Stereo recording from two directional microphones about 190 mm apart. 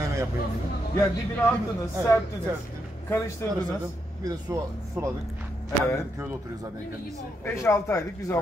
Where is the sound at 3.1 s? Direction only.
15° left (ahead or behind).